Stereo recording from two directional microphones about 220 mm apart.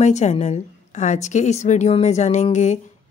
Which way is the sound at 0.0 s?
30° left (ahead or behind).